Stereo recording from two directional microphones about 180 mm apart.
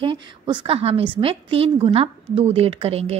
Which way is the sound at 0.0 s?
25° right (ahead or behind).